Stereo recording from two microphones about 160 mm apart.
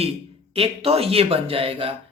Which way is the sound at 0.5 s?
35° right (ahead or behind).